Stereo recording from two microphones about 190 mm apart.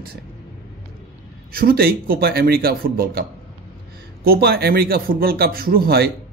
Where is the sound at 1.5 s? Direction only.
50° right (ahead or behind).